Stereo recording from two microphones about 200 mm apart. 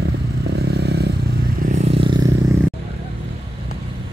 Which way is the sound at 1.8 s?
25° right (ahead or behind).